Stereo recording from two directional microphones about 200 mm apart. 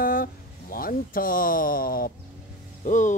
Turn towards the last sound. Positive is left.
turn(degrees=40)  # may be behind; listen again after turning